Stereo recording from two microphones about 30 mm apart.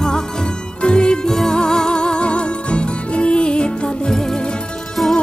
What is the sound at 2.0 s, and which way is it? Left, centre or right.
Music, left.